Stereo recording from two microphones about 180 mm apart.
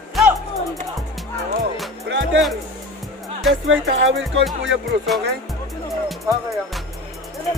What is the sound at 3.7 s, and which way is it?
Music, 90° right.